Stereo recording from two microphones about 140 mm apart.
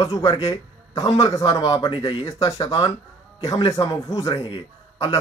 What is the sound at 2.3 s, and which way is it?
A man's voice, 25° left (ahead or behind).